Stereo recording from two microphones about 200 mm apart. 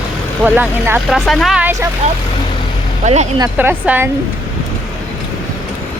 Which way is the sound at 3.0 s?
35° right (ahead or behind).